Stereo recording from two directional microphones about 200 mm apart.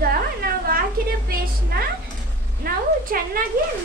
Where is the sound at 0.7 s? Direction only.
45° right (ahead or behind).